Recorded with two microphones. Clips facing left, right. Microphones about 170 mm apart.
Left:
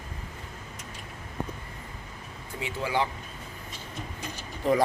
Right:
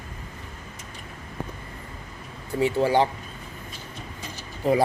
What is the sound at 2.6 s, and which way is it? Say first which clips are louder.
Speech: right 8 dB; 35° right (ahead or behind).